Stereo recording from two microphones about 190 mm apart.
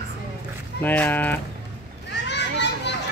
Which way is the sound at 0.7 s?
10° left (ahead or behind).